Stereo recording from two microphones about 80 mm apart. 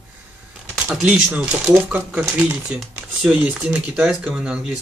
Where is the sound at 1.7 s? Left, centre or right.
Centre.